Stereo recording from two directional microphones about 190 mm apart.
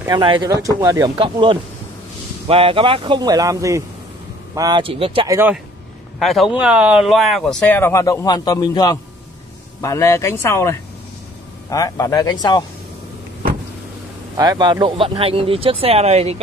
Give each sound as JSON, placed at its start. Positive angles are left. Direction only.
{"t": 0.1, "sound": "speech", "side_deg": -25}
{"t": 5.3, "sound": "speech", "side_deg": -10}
{"t": 6.1, "sound": "speech", "side_deg": 0}
{"t": 14.3, "sound": "speech", "side_deg": -20}